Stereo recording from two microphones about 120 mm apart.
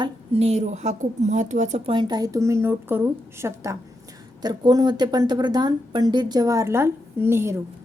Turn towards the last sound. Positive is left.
turn(degrees=-20)  # may be behind; listen again after turning